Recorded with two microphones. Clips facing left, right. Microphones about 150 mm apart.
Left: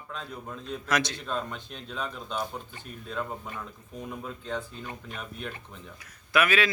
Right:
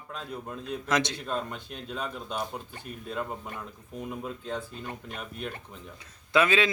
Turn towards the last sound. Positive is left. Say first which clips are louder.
# right 1 dB
turn(degrees=-25)  # may be behind; listen again after turning